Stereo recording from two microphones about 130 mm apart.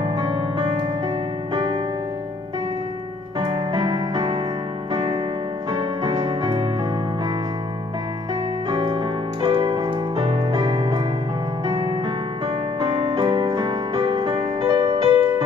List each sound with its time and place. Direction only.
0.0 s music: 40° right (ahead or behind)
3.3 s music: 35° right (ahead or behind)
8.6 s keyboard: 35° right (ahead or behind)
11.6 s music: 25° right (ahead or behind)
12.8 s music: 40° right (ahead or behind)